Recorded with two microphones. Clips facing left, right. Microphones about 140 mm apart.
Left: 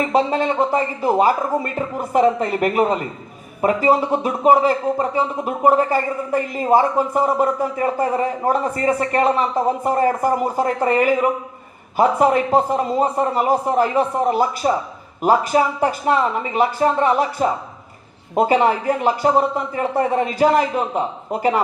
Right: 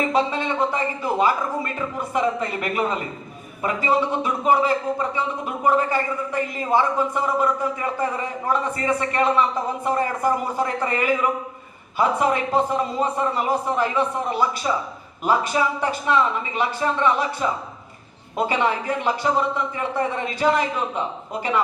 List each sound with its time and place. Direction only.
0.1 s speech: 40° left (ahead or behind)